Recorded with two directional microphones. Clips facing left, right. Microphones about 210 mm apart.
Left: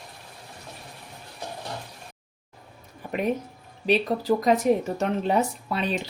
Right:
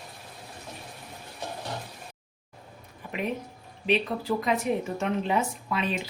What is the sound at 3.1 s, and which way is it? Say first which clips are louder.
Speech: left 5 dB; 45° left (ahead or behind).